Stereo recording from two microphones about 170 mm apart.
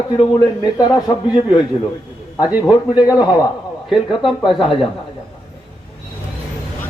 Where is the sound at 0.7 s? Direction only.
20° left (ahead or behind).